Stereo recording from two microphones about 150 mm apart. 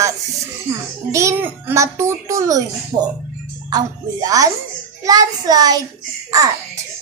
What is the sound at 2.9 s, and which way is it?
Speech, 55° right (ahead or behind).